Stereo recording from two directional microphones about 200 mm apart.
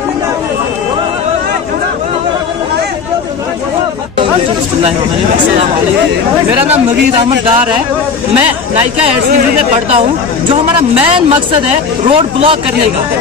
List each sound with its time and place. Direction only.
10.5 s speech: 25° right (ahead or behind)